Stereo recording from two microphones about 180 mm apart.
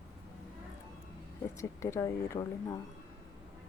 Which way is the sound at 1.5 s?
15° left (ahead or behind).